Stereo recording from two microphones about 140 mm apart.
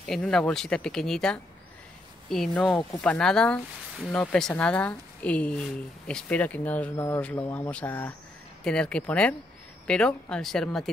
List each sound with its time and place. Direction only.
0.0 s speech: 5° left (ahead or behind)